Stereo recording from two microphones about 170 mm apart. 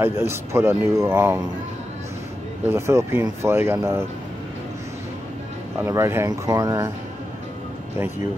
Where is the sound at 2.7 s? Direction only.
15° right (ahead or behind).